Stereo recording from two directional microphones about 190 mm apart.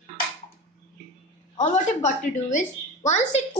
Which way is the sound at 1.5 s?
40° left (ahead or behind).